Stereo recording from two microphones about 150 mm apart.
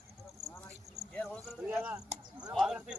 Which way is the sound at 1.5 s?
10° right (ahead or behind).